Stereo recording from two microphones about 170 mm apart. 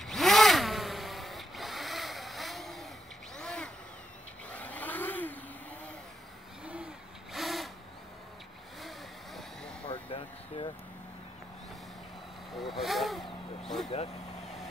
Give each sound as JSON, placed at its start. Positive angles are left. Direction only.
{"t": 0.0, "sound": "zipper", "side_deg": 0}
{"t": 3.3, "sound": "a sound", "side_deg": 5}
{"t": 4.5, "sound": "vehicle", "side_deg": 10}
{"t": 6.6, "sound": "a sound", "side_deg": -5}
{"t": 8.8, "sound": "vehicle", "side_deg": 0}
{"t": 9.8, "sound": "vehicle", "side_deg": 30}
{"t": 12.5, "sound": "vehicle", "side_deg": 0}
{"t": 13.8, "sound": "vehicle", "side_deg": 35}